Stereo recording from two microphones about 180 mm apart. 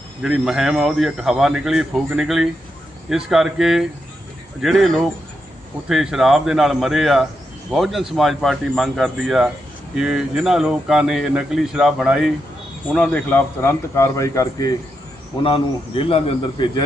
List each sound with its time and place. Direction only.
0.2 s a man's voice: 5° right (ahead or behind); by 14.8 s 20° left (ahead or behind)
15.4 s a man's voice: 30° left (ahead or behind)